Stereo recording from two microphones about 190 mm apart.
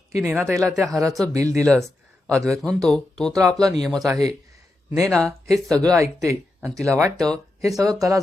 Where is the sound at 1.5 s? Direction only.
5° left (ahead or behind).